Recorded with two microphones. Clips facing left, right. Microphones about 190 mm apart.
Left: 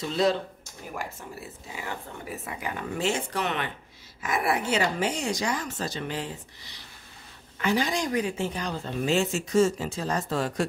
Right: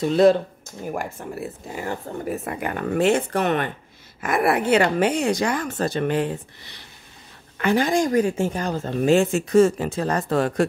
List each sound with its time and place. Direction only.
0.0 s speech: 55° right (ahead or behind)